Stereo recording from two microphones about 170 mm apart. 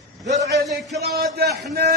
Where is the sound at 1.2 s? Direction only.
70° right (ahead or behind).